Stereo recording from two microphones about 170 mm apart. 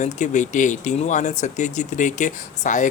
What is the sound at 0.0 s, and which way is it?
Speech, 45° left (ahead or behind).